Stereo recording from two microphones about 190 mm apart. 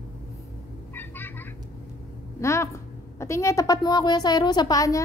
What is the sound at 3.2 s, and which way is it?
A woman's voice, 15° left (ahead or behind).